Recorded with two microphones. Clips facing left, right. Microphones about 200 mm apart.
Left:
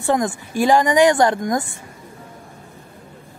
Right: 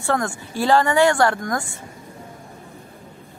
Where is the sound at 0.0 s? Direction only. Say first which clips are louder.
Left 3 dB; 20° left (ahead or behind).